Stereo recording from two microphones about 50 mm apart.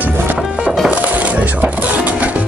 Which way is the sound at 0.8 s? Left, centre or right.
Right.